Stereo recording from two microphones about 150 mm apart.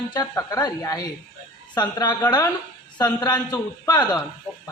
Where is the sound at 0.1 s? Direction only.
25° left (ahead or behind).